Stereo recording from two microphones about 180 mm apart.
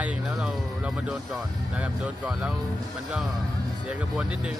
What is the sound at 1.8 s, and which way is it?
Speech, 5° right (ahead or behind).